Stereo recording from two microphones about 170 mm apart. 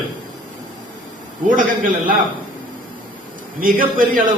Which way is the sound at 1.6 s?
50° right (ahead or behind).